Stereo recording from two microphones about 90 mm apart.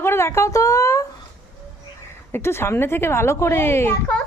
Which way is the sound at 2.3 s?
30° left (ahead or behind).